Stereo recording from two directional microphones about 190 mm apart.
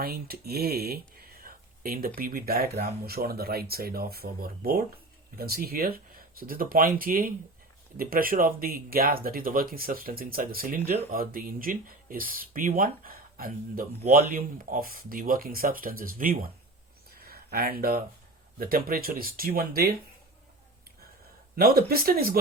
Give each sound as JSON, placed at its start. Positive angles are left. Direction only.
{"t": 0.0, "sound": "speech", "side_deg": -55}
{"t": 17.2, "sound": "a sound", "side_deg": -50}
{"t": 18.6, "sound": "speech", "side_deg": -50}
{"t": 21.5, "sound": "speech", "side_deg": -50}